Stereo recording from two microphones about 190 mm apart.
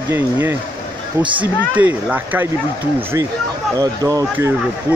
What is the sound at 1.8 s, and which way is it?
Speech, 10° right (ahead or behind).